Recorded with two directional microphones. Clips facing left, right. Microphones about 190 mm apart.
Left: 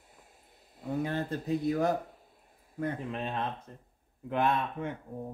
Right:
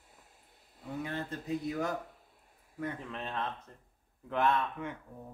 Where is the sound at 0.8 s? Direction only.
40° left (ahead or behind).